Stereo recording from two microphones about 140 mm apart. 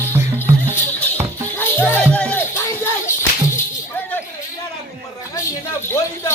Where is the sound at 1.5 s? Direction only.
10° left (ahead or behind).